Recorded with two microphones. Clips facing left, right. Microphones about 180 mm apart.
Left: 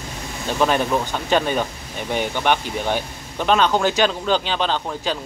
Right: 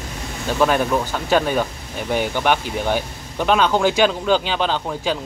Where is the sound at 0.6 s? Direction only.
Centre (ahead or behind).